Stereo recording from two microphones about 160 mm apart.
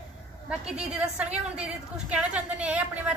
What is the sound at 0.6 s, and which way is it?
A woman's voice, 5° right (ahead or behind).